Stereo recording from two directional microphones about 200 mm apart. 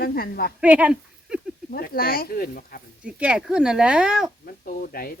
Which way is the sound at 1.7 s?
45° left (ahead or behind).